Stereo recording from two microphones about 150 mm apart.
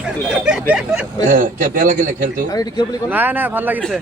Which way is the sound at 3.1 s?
10° right (ahead or behind).